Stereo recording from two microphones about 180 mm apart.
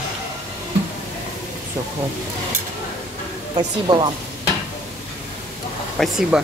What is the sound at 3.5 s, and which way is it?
Speech, 25° right (ahead or behind).